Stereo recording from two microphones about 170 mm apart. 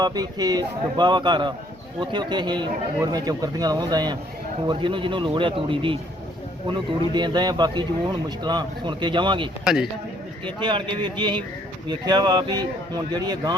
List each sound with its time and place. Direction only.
0.0 s a man's voice: 25° right (ahead or behind)